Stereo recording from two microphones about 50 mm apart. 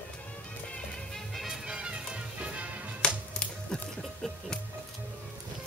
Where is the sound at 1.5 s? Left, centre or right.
Centre.